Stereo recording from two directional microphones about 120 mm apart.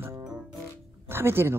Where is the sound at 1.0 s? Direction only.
20° right (ahead or behind).